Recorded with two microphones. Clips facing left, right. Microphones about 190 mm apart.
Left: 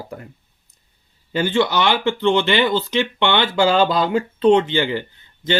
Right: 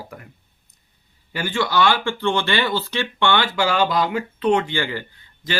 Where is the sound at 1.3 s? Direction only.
20° left (ahead or behind).